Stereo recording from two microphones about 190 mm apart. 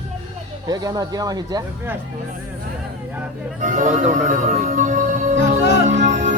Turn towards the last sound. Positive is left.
turn(degrees=-40)  # may be behind; listen again after turning